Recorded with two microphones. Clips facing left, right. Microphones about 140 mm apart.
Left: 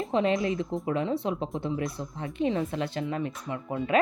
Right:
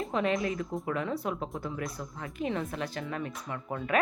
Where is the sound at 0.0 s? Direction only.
30° left (ahead or behind).